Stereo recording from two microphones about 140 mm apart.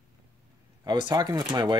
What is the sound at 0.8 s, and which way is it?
Speech, 30° right (ahead or behind).